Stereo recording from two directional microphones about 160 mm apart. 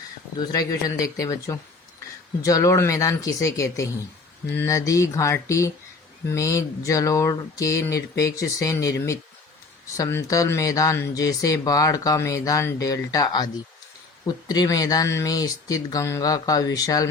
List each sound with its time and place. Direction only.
0.3 s speech: 25° left (ahead or behind)